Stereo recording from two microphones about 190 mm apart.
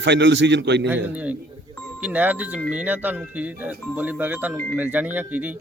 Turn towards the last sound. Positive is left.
turn(degrees=-10)  # may be behind; listen again after turning